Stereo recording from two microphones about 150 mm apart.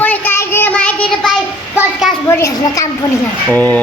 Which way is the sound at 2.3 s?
20° left (ahead or behind).